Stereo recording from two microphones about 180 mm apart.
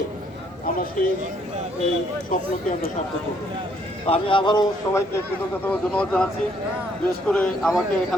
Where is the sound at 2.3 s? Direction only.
50° left (ahead or behind).